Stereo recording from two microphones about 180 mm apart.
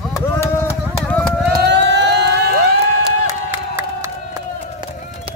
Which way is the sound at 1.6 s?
75° right (ahead or behind).